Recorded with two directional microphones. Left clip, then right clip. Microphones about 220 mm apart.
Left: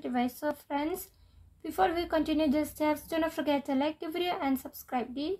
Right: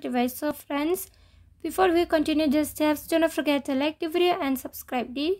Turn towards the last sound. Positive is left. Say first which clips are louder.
# right 5 dB
turn(degrees=-35)  # may be behind; listen again after turning